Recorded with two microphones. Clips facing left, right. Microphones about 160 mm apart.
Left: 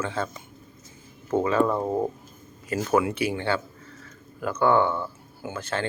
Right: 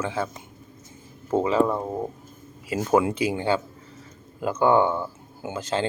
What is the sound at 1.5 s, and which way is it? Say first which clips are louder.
Speech: right 1 dB; 15° right (ahead or behind).